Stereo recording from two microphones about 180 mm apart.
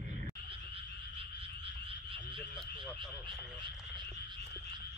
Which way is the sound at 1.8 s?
30° right (ahead or behind).